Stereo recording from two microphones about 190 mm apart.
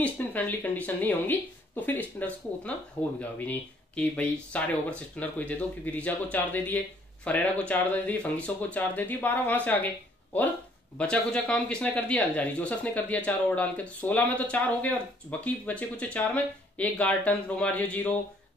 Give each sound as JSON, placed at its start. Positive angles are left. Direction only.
{"t": 0.0, "sound": "speech", "side_deg": 10}
{"t": 11.0, "sound": "speech", "side_deg": 5}